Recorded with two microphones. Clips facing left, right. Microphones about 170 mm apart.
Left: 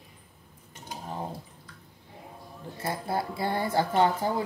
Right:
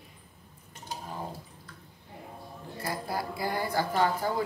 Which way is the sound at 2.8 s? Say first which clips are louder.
Left 3 dB; 25° left (ahead or behind).